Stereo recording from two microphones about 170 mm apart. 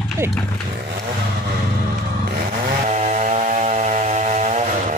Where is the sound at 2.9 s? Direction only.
45° right (ahead or behind).